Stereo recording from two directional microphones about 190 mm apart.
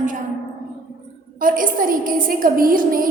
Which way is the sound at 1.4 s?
45° right (ahead or behind).